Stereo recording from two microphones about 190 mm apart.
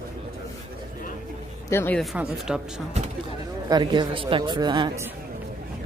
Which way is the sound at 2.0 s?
5° right (ahead or behind).